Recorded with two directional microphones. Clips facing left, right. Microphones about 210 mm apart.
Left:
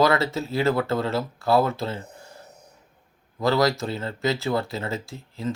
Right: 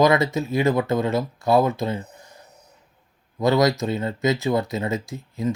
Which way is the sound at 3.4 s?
20° right (ahead or behind).